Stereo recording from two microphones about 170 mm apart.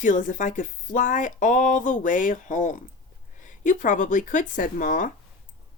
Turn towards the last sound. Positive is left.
turn(degrees=50)  # may be behind; listen again after turning